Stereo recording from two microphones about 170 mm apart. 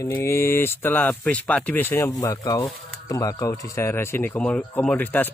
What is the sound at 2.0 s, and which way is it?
Speech, 20° left (ahead or behind).